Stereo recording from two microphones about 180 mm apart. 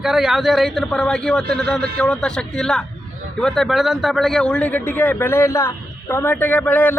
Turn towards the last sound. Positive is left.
turn(degrees=10)  # may be behind; listen again after turning